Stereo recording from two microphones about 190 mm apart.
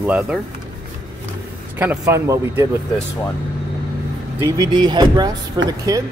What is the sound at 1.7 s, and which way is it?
Speech, 10° right (ahead or behind).